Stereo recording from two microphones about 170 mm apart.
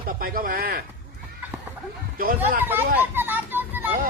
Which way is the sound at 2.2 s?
55° right (ahead or behind).